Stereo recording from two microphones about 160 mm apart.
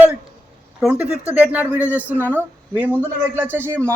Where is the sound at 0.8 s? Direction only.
5° right (ahead or behind).